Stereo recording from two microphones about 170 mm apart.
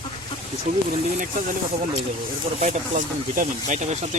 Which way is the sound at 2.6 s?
45° right (ahead or behind).